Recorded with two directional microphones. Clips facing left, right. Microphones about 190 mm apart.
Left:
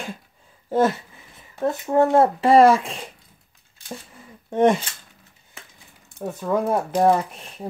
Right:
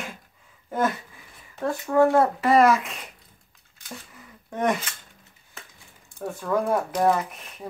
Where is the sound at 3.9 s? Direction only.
30° left (ahead or behind).